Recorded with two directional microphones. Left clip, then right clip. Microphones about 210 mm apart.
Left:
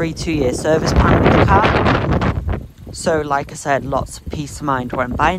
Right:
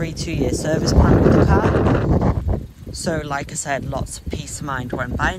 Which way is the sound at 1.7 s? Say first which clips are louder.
Left 4 dB; 25° right (ahead or behind).